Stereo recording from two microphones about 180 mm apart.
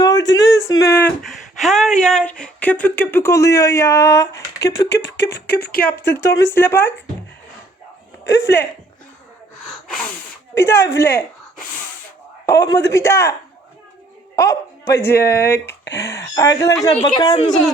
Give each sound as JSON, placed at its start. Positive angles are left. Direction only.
{"t": 0.7, "sound": "speech", "side_deg": 15}
{"t": 1.2, "sound": "speech", "side_deg": 0}
{"t": 4.9, "sound": "a sound", "side_deg": 70}
{"t": 5.5, "sound": "a woman's voice", "side_deg": 65}
{"t": 6.1, "sound": "speech", "side_deg": 15}
{"t": 8.3, "sound": "speech", "side_deg": 15}
{"t": 10.5, "sound": "speech", "side_deg": 15}
{"t": 12.5, "sound": "speech", "side_deg": 15}
{"t": 14.3, "sound": "speech", "side_deg": 15}